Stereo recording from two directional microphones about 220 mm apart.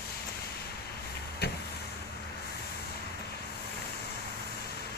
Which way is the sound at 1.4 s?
45° left (ahead or behind).